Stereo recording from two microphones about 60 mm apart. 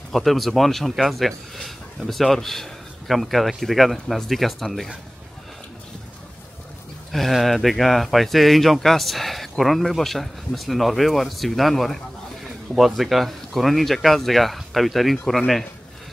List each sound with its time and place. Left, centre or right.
0.1 s speech: centre
7.1 s speech: centre